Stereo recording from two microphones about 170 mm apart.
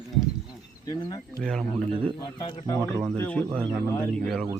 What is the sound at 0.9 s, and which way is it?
Speech, 25° left (ahead or behind).